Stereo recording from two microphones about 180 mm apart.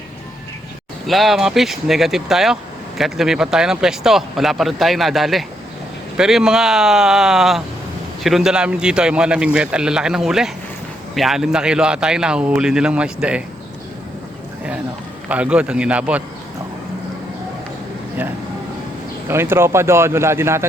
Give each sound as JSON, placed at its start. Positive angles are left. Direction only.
{"t": 1.0, "sound": "speech", "side_deg": 0}
{"t": 15.3, "sound": "speech", "side_deg": -5}
{"t": 19.3, "sound": "speech", "side_deg": -15}